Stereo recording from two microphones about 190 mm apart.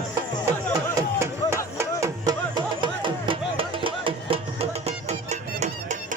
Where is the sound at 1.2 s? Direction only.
15° right (ahead or behind).